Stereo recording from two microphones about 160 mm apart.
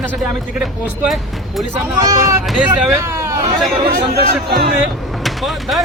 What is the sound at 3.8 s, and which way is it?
Speech, 80° right.